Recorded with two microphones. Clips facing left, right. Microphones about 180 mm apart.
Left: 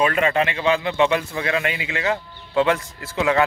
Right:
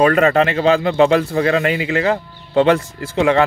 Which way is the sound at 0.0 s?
45° right (ahead or behind).